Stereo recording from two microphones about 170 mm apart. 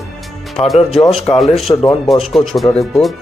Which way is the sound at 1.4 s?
Centre (ahead or behind).